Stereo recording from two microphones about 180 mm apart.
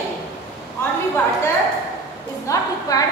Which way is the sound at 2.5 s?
20° left (ahead or behind).